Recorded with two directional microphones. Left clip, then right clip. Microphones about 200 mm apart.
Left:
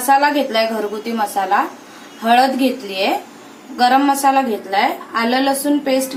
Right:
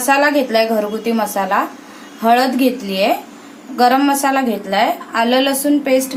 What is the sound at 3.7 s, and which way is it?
A woman's voice, 45° right (ahead or behind).